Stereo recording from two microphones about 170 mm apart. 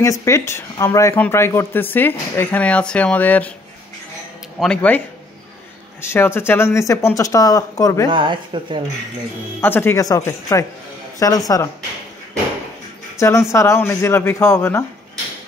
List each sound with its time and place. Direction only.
0.0 s speech: 20° left (ahead or behind)
4.6 s speech: 5° left (ahead or behind)
8.1 s speech: 30° right (ahead or behind)
9.6 s speech: 15° left (ahead or behind)
13.2 s speech: 15° left (ahead or behind)